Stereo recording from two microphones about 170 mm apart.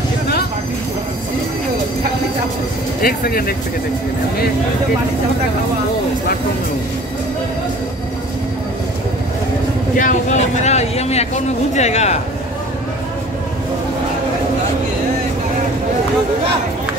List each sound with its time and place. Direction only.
3.0 s speech: 60° left (ahead or behind)
9.9 s speech: 45° left (ahead or behind)